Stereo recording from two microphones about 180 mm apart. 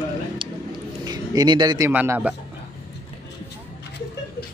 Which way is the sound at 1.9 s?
10° right (ahead or behind).